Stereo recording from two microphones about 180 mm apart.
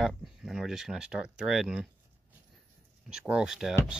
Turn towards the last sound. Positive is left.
turn(degrees=-5)  # may be behind; listen again after turning